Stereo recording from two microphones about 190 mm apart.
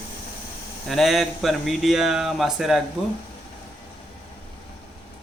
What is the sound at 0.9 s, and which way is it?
Speech, centre (ahead or behind).